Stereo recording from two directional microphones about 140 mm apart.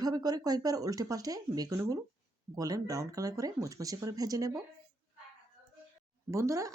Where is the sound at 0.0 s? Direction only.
25° right (ahead or behind).